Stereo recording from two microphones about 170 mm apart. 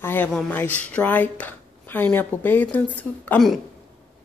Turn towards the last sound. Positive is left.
turn(degrees=5)  # may be behind; listen again after turning